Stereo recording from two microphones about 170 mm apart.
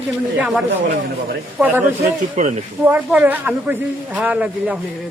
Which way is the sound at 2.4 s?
45° right (ahead or behind).